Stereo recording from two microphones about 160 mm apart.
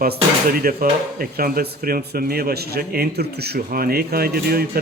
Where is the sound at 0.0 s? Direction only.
65° right (ahead or behind).